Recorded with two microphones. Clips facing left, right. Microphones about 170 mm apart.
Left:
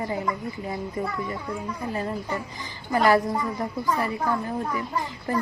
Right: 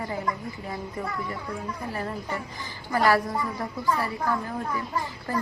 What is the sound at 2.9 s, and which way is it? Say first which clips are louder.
A woman's voice: left 2 dB; 20° left (ahead or behind).